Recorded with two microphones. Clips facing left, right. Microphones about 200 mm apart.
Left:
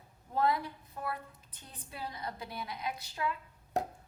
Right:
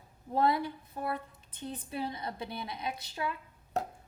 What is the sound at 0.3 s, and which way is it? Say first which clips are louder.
A woman's voice: right 2 dB; 30° right (ahead or behind).